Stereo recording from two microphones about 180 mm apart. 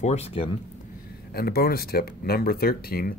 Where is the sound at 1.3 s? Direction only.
60° left (ahead or behind).